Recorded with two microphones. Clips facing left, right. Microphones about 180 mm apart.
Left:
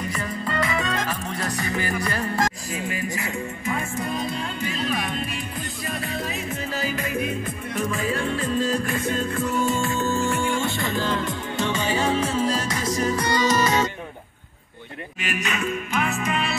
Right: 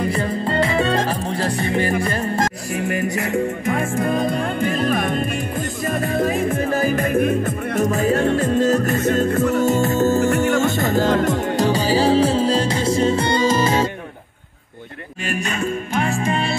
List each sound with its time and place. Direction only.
0.1 s music: 30° right (ahead or behind)
2.7 s music: 70° right (ahead or behind)
3.9 s music: 50° right (ahead or behind); by 13.8 s 30° right (ahead or behind)
15.3 s music: 30° right (ahead or behind)